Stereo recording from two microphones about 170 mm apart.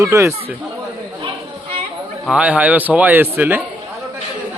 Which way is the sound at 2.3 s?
5° right (ahead or behind).